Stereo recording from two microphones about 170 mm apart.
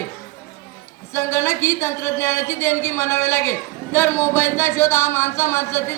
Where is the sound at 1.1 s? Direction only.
15° left (ahead or behind).